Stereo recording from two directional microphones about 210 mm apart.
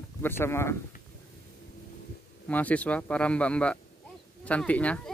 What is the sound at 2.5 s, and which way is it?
Speech, 5° left (ahead or behind).